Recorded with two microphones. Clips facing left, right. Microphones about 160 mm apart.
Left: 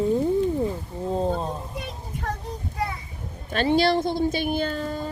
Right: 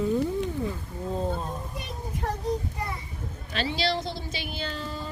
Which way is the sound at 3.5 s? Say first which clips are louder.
Left 8 dB; 50° left (ahead or behind).